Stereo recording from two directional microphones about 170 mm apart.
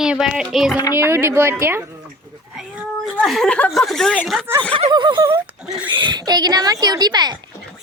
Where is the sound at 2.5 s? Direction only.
5° right (ahead or behind).